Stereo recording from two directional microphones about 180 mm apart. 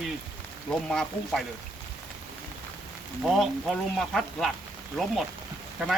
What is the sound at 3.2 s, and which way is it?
Speech, centre (ahead or behind).